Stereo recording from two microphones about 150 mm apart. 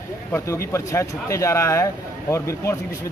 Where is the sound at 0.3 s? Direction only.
20° left (ahead or behind).